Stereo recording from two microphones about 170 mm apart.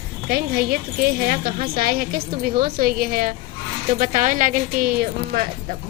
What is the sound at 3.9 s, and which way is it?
A woman's voice, 50° right (ahead or behind).